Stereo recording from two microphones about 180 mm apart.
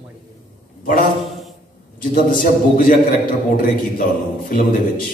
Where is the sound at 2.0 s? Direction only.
50° left (ahead or behind).